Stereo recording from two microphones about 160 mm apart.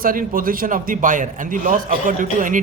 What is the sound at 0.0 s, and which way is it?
A man's voice, 60° right (ahead or behind).